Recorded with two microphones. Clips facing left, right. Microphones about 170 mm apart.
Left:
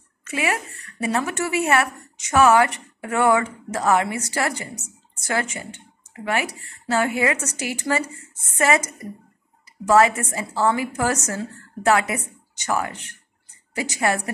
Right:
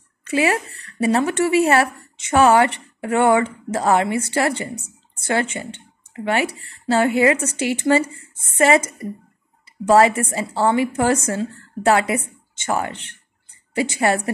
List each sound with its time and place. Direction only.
0.2 s a woman's voice: 30° right (ahead or behind)